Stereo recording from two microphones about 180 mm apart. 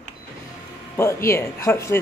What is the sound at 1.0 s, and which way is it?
Speech, 15° left (ahead or behind).